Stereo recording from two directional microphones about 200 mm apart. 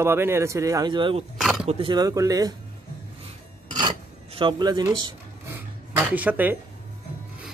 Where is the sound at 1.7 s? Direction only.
25° right (ahead or behind).